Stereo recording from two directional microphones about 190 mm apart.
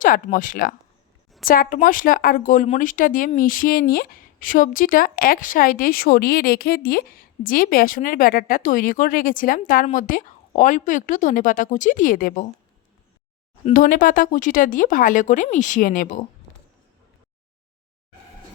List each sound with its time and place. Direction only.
0.0 s a woman's voice: 45° left (ahead or behind)
13.7 s a woman's voice: 45° left (ahead or behind)